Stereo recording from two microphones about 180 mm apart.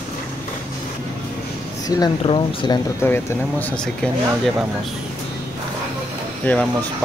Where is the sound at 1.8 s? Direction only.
20° left (ahead or behind).